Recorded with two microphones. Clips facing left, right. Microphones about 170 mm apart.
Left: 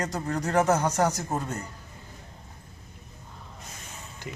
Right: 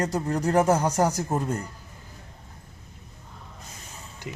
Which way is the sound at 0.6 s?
10° right (ahead or behind).